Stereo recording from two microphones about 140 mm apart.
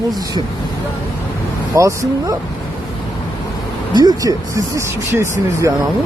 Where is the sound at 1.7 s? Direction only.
20° right (ahead or behind).